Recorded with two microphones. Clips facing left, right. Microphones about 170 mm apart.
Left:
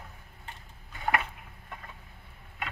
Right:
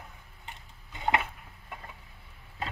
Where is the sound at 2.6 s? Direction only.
30° right (ahead or behind).